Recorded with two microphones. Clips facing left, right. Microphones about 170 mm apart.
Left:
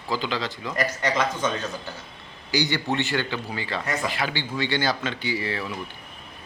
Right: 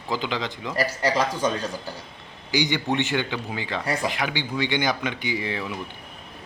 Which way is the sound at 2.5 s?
15° right (ahead or behind).